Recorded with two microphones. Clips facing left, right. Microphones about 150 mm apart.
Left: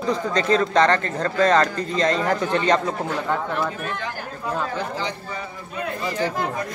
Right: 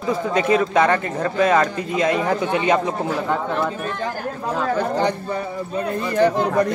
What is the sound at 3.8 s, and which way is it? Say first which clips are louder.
Speech: right 3 dB; 35° right (ahead or behind).